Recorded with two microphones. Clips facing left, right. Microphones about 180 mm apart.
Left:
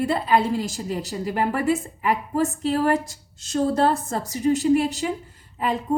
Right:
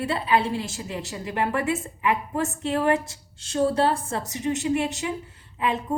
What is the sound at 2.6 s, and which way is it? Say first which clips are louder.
A woman's voice: right 2 dB; 35° left (ahead or behind).